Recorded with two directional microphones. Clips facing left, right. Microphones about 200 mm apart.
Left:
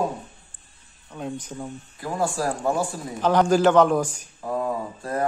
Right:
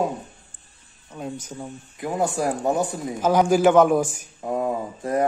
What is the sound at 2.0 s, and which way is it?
Speech, 20° right (ahead or behind).